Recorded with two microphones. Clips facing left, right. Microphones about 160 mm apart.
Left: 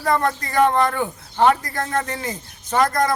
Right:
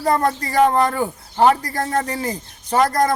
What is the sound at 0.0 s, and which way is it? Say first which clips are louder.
Speech: right 2 dB; 35° right (ahead or behind).